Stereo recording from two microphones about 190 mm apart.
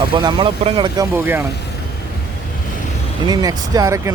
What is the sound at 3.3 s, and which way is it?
Speech, 20° right (ahead or behind).